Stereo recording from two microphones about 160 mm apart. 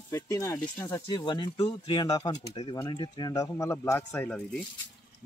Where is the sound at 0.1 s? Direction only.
20° left (ahead or behind).